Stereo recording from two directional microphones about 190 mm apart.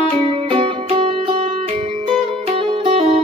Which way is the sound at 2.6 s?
30° right (ahead or behind).